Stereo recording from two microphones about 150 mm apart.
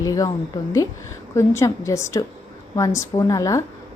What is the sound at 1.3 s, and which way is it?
A woman's voice, 20° left (ahead or behind).